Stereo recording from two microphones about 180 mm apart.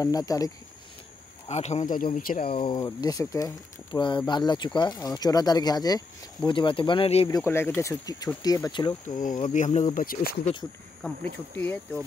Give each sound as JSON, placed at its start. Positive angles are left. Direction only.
{"t": 0.0, "sound": "speech", "side_deg": 20}
{"t": 1.5, "sound": "speech", "side_deg": 40}
{"t": 2.4, "sound": "speech", "side_deg": 30}
{"t": 7.2, "sound": "speech", "side_deg": 15}
{"t": 9.0, "sound": "speech", "side_deg": 45}
{"t": 11.0, "sound": "speech", "side_deg": 5}